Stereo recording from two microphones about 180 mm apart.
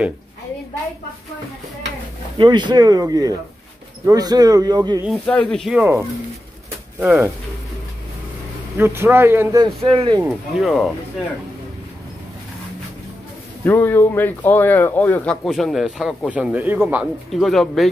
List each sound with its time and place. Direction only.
2.3 s speech: 25° right (ahead or behind)
5.2 s speech: 10° left (ahead or behind)
5.8 s speech: 15° right (ahead or behind)
8.7 s speech: 15° right (ahead or behind)
9.8 s speech: 30° right (ahead or behind)
10.2 s speech: centre (ahead or behind)
13.7 s speech: 10° left (ahead or behind)